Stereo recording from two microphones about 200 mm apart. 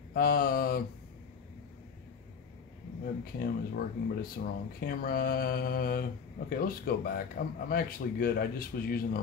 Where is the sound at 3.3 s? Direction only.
45° left (ahead or behind).